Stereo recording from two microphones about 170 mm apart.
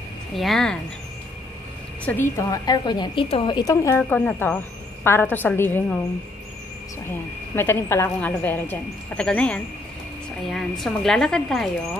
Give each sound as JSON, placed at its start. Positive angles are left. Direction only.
{"t": 0.4, "sound": "a woman's voice", "side_deg": 0}
{"t": 2.0, "sound": "a woman's voice", "side_deg": 15}
{"t": 7.1, "sound": "a woman's voice", "side_deg": 15}